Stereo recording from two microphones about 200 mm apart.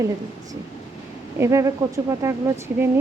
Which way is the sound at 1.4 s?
15° right (ahead or behind).